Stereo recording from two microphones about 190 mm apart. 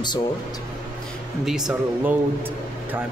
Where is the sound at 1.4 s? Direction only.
5° right (ahead or behind).